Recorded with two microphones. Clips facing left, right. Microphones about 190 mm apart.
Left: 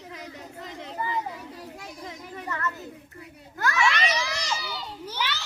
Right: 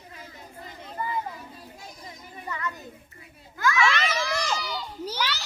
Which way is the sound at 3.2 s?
60° left (ahead or behind).